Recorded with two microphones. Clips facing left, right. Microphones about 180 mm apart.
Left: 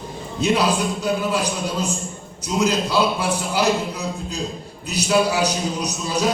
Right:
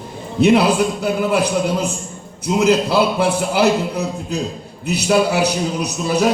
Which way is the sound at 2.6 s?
65° right (ahead or behind).